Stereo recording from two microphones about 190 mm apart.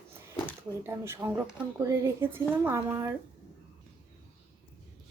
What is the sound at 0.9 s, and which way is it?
Speech, 15° right (ahead or behind).